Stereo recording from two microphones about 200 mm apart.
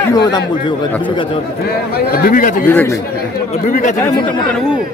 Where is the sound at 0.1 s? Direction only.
20° left (ahead or behind).